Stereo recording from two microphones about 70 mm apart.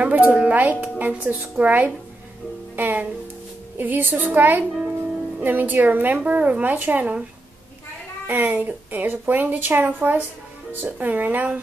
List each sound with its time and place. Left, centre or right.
0.0 s speech: right
8.3 s speech: right